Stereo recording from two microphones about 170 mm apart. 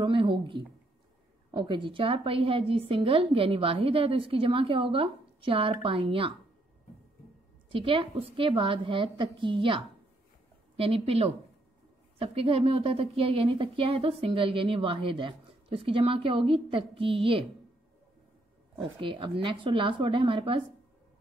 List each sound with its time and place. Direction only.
0.0 s a sound: 30° right (ahead or behind)
1.5 s a woman's voice: 30° right (ahead or behind)
7.7 s a woman's voice: 30° right (ahead or behind)
18.8 s speech: 30° right (ahead or behind)